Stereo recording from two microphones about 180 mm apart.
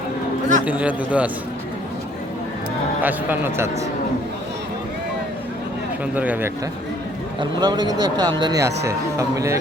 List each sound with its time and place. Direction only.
0.6 s a man's voice: 10° right (ahead or behind)
3.0 s a man's voice: 10° right (ahead or behind)
6.1 s a man's voice: 10° right (ahead or behind)
7.3 s a man's voice: 25° right (ahead or behind)